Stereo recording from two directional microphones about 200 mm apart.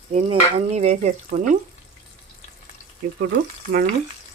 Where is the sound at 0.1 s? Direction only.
30° right (ahead or behind).